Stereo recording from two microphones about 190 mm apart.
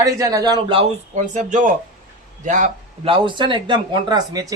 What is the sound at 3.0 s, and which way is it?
Speech, 25° right (ahead or behind).